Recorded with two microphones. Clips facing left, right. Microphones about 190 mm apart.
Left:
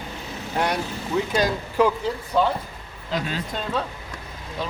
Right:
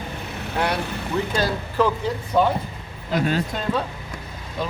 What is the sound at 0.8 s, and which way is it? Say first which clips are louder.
Speech: right 1 dB; 65° right (ahead or behind).